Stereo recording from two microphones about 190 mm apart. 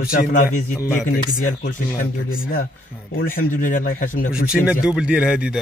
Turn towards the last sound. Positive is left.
turn(degrees=-5)  # may be behind; listen again after turning